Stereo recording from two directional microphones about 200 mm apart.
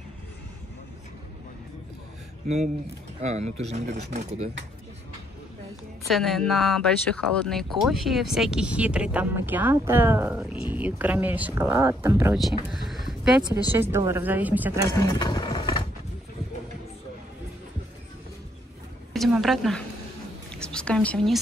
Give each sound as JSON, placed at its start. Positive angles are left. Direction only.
{"t": 2.4, "sound": "speech", "side_deg": -35}
{"t": 6.0, "sound": "speech", "side_deg": 0}
{"t": 12.7, "sound": "a sound", "side_deg": 0}
{"t": 13.7, "sound": "speech", "side_deg": -10}
{"t": 15.1, "sound": "vehicle", "side_deg": 20}
{"t": 19.1, "sound": "a sound", "side_deg": 0}